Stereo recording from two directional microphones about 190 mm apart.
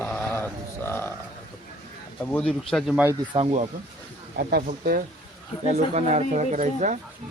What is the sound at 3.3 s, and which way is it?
Speech, 30° right (ahead or behind).